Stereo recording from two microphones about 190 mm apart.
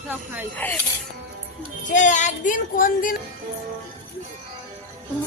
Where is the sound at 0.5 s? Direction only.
10° left (ahead or behind).